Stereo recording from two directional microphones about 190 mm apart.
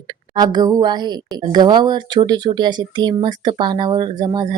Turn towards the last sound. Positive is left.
turn(degrees=-20)  # may be behind; listen again after turning